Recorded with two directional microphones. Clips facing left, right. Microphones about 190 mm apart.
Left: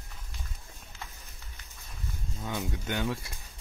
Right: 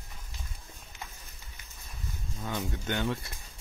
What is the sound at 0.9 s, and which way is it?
Run, 20° right (ahead or behind).